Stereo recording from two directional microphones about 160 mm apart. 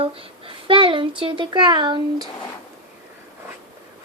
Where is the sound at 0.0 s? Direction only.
35° right (ahead or behind).